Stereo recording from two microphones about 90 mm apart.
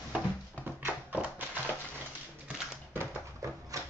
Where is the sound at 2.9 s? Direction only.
30° right (ahead or behind).